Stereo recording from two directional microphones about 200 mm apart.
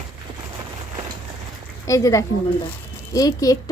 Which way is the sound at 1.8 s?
15° left (ahead or behind).